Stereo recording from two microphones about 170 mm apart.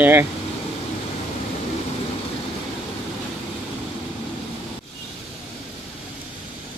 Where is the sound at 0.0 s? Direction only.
10° right (ahead or behind).